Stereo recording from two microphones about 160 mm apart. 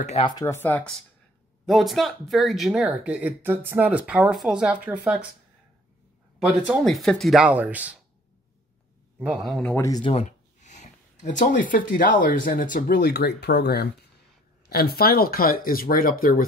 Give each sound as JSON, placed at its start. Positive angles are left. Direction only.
{"t": 0.4, "sound": "speech", "side_deg": 15}
{"t": 1.7, "sound": "speech", "side_deg": 0}
{"t": 6.4, "sound": "speech", "side_deg": 0}
{"t": 9.2, "sound": "speech", "side_deg": 0}
{"t": 9.7, "sound": "speech", "side_deg": 20}
{"t": 10.6, "sound": "speech", "side_deg": 50}
{"t": 14.7, "sound": "speech", "side_deg": 75}